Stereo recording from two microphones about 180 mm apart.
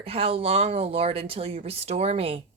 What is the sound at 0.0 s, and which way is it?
Speech, 30° right (ahead or behind).